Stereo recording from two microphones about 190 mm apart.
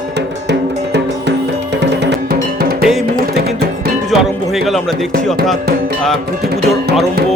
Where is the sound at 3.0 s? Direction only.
55° right (ahead or behind).